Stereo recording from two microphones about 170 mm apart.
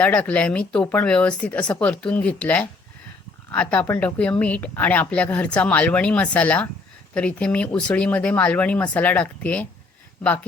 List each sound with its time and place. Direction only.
0.0 s speech: 10° left (ahead or behind)